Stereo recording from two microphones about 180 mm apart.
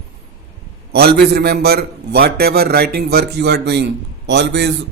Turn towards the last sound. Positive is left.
turn(degrees=-75)  # may be behind; listen again after turning